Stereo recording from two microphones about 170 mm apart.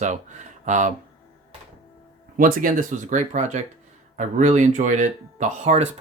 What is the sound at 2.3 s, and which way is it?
Speech, 55° right (ahead or behind).